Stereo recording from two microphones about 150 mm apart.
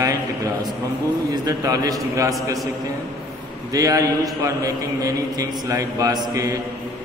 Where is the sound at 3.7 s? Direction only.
25° right (ahead or behind).